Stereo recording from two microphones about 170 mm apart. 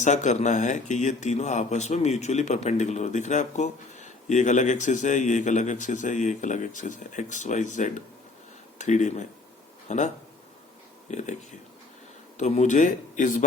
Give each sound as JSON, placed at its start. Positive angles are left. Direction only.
{"t": 0.0, "sound": "speech", "side_deg": 45}
{"t": 11.1, "sound": "speech", "side_deg": 45}
{"t": 12.4, "sound": "speech", "side_deg": 45}